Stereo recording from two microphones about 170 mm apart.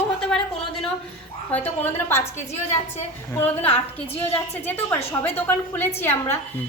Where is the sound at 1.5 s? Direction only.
10° left (ahead or behind).